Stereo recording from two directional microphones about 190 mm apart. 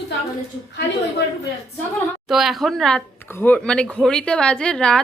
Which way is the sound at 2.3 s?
Centre (ahead or behind).